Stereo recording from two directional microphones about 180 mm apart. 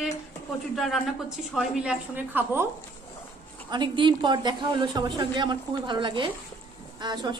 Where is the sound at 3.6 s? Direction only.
25° right (ahead or behind).